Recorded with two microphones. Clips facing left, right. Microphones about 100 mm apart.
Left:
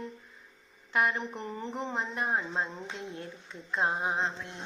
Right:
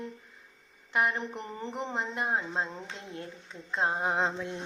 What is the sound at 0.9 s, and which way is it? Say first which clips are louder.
Speech: even; 20° right (ahead or behind).